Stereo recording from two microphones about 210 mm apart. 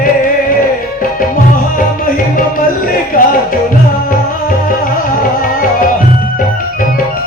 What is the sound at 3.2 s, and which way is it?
Music, 45° left (ahead or behind).